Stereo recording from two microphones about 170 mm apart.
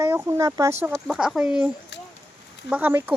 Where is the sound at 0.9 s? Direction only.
Centre (ahead or behind).